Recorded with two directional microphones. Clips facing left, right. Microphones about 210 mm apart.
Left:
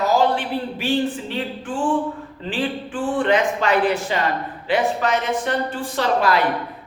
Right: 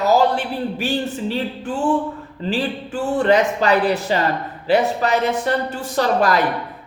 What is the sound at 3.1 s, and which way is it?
A woman's voice, 40° right (ahead or behind).